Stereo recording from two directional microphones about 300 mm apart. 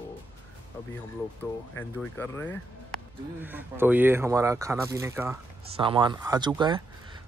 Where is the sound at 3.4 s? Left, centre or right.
Centre.